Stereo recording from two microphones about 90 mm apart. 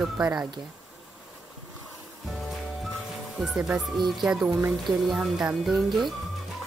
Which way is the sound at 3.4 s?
5° right (ahead or behind).